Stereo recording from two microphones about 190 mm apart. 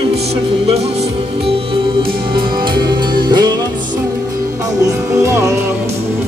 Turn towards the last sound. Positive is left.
turn(degrees=-15)  # may be behind; listen again after turning